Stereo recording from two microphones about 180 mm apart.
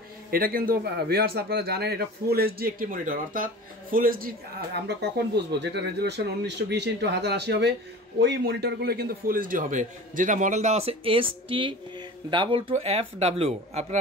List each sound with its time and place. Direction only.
0.3 s a man's voice: 55° right (ahead or behind)
4.8 s a man's voice: 70° right (ahead or behind); by 13.9 s 35° right (ahead or behind)